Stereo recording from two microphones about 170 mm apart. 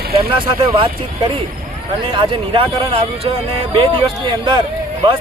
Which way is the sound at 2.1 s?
30° right (ahead or behind).